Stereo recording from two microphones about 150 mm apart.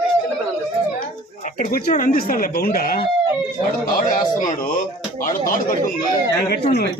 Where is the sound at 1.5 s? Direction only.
70° left (ahead or behind); by 3.1 s 85° left.